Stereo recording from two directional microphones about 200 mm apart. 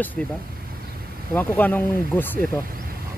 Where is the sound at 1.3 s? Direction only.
10° left (ahead or behind).